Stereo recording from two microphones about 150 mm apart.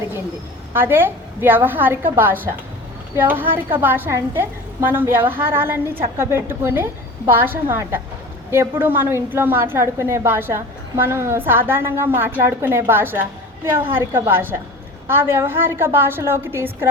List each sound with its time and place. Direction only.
0.7 s a woman's voice: 15° right (ahead or behind)